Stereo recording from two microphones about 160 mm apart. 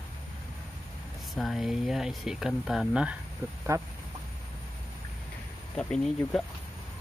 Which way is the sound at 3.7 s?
20° right (ahead or behind).